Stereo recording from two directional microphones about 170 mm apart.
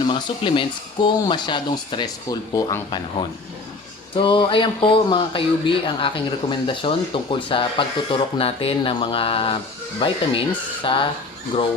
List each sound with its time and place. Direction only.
0.1 s speech: 30° left (ahead or behind)